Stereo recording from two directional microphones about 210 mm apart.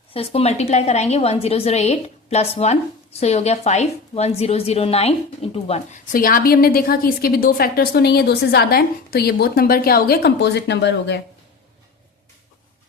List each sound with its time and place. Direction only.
0.1 s a woman's voice: 25° left (ahead or behind); by 11.2 s 55° left (ahead or behind)